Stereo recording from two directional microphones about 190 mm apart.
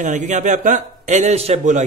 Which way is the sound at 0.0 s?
40° right (ahead or behind).